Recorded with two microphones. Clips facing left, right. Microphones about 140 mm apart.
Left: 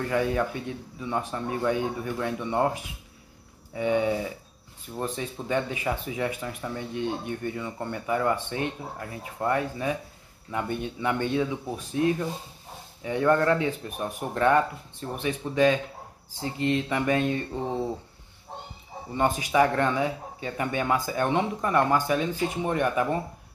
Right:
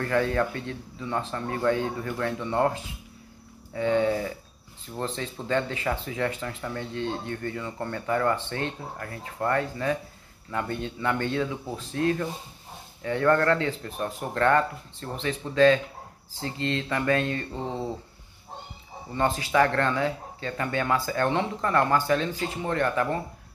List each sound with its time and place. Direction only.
0.0 s speech: 15° left (ahead or behind)
19.1 s speech: 15° left (ahead or behind)